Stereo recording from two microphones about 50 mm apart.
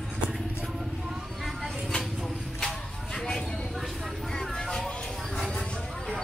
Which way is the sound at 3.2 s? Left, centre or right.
Centre.